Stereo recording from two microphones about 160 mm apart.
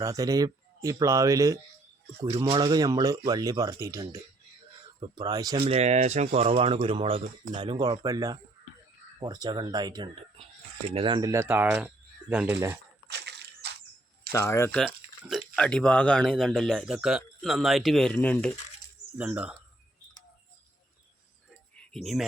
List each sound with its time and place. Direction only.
0.0 s speech: 20° right (ahead or behind)
5.5 s speech: 40° right (ahead or behind); by 12.8 s 15° right (ahead or behind)
13.1 s a sound: 90° right
14.3 s speech: 15° left (ahead or behind)
15.3 s speech: 5° left (ahead or behind)
19.1 s speech: 10° right (ahead or behind)
21.8 s a sound: centre (ahead or behind)